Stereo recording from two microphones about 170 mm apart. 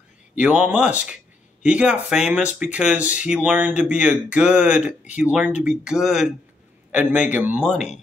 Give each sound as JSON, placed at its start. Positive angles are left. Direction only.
{"t": 0.4, "sound": "speech", "side_deg": -10}